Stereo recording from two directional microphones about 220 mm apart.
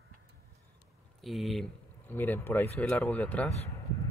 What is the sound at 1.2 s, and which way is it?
Speech, centre (ahead or behind).